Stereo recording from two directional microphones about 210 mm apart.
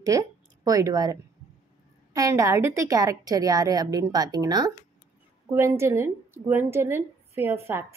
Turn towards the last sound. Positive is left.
turn(degrees=-10)  # may be behind; listen again after turning